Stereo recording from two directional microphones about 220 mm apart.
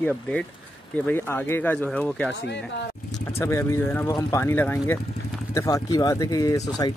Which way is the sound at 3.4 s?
10° left (ahead or behind).